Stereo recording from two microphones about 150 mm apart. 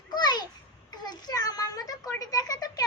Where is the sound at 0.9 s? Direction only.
25° left (ahead or behind).